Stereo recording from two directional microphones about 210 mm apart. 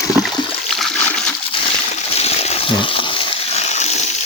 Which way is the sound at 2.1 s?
30° left (ahead or behind).